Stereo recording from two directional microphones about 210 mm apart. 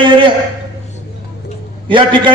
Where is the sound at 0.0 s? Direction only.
25° right (ahead or behind).